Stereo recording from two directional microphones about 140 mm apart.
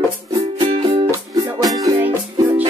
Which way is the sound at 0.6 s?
40° right (ahead or behind).